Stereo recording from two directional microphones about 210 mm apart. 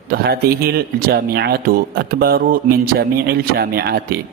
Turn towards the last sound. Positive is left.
turn(degrees=-45)  # may be behind; listen again after turning